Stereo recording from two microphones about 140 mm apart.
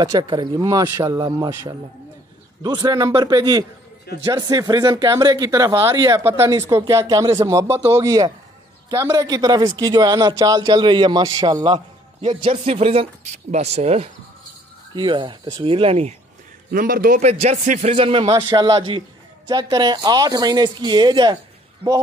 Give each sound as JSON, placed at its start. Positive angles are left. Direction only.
{"t": 0.0, "sound": "speech", "side_deg": -30}
{"t": 12.4, "sound": "speech", "side_deg": -45}
{"t": 15.0, "sound": "a man's voice", "side_deg": -35}
{"t": 16.7, "sound": "a man's voice", "side_deg": -90}
{"t": 17.2, "sound": "speech", "side_deg": -50}
{"t": 17.9, "sound": "a man's voice", "side_deg": -40}